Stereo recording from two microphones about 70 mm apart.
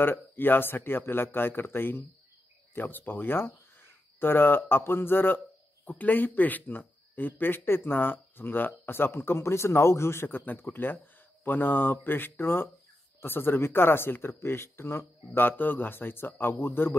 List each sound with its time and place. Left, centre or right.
0.0 s speech: left